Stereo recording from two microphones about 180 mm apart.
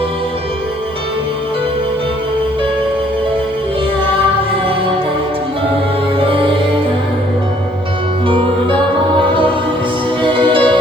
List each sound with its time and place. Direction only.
6.1 s music: 30° right (ahead or behind)
10.2 s music: 30° right (ahead or behind)